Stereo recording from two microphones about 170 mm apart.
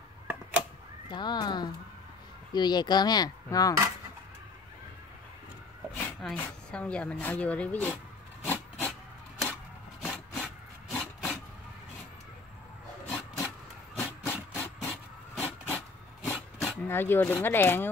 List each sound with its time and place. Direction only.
1.1 s speech: 25° left (ahead or behind)
5.9 s speech: 10° left (ahead or behind)
8.5 s a sound: 10° left (ahead or behind)
10.0 s wood: 5° left (ahead or behind)
13.9 s printer: 15° left (ahead or behind)
16.3 s a sound: 10° left (ahead or behind)